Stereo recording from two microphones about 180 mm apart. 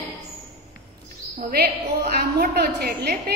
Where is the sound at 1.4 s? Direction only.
55° right (ahead or behind).